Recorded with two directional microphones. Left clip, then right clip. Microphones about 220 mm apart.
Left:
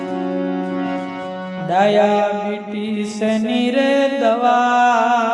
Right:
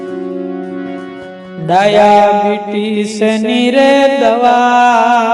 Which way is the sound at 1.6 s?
35° right (ahead or behind).